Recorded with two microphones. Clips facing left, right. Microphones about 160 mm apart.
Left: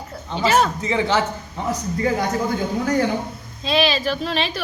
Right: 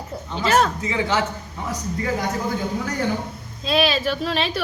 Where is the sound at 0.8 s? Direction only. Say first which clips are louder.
Left 2 dB; 30° left (ahead or behind).